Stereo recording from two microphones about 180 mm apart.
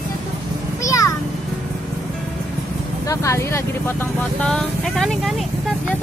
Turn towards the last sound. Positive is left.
turn(degrees=0)  # may be behind; listen again after turning